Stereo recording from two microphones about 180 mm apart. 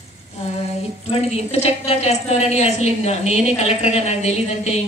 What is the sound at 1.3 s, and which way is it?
A woman's voice, 35° left (ahead or behind).